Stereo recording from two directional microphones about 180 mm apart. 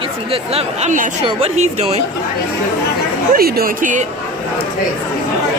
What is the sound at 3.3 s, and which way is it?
Speech, 55° right (ahead or behind).